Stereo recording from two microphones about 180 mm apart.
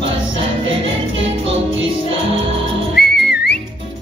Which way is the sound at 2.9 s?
60° left (ahead or behind).